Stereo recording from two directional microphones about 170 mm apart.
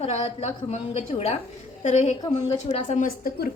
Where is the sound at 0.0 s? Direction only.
40° left (ahead or behind).